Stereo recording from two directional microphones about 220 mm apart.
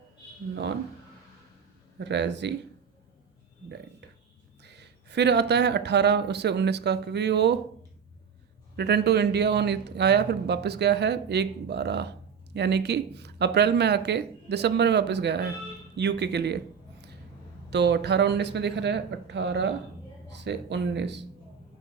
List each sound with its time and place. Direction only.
2.0 s speech: 50° right (ahead or behind)
4.6 s speech: 50° right (ahead or behind)
8.7 s speech: 50° right (ahead or behind)
17.7 s speech: 50° right (ahead or behind)